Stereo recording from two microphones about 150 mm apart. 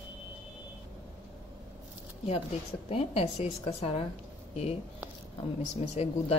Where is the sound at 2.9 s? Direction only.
45° left (ahead or behind).